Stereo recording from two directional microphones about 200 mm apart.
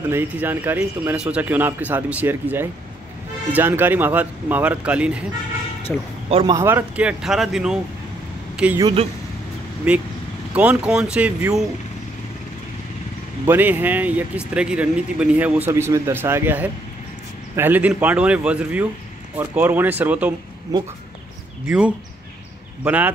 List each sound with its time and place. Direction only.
0.1 s a man's voice: 10° right (ahead or behind)
6.2 s speech: 30° right (ahead or behind)
6.5 s speech: 10° right (ahead or behind)
9.9 s speech: 5° right (ahead or behind)
13.5 s a man's voice: 10° right (ahead or behind)
21.6 s a man's voice: 5° right (ahead or behind)